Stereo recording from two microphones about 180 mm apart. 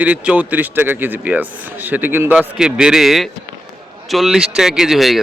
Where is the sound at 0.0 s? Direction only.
10° right (ahead or behind).